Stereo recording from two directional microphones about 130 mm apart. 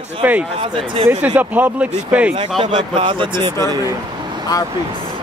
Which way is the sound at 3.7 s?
30° right (ahead or behind).